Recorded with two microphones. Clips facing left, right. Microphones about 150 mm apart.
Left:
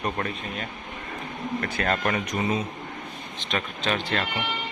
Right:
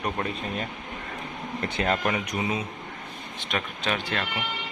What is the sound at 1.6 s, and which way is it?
Speech, 20° right (ahead or behind).